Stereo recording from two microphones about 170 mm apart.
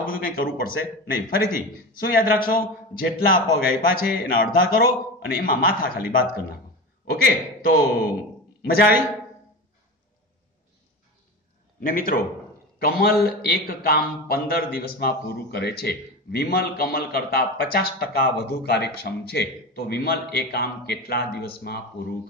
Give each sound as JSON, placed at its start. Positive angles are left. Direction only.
{"t": 0.0, "sound": "a man's voice", "side_deg": 60}
{"t": 7.6, "sound": "a man's voice", "side_deg": 60}
{"t": 11.8, "sound": "a man's voice", "side_deg": 55}